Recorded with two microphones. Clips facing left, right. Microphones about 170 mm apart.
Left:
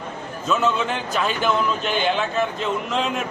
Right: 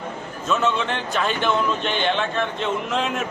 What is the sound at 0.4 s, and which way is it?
Speech, centre (ahead or behind).